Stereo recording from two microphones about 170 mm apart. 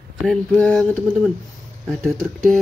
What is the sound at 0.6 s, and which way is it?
Speech, 5° left (ahead or behind).